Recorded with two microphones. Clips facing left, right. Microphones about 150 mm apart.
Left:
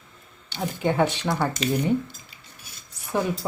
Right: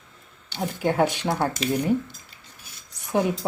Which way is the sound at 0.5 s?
5° right (ahead or behind).